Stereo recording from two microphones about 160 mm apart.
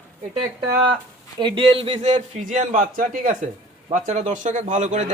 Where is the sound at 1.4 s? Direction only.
30° right (ahead or behind); by 3.3 s 60° right (ahead or behind).